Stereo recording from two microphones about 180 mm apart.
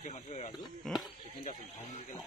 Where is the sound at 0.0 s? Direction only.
40° left (ahead or behind).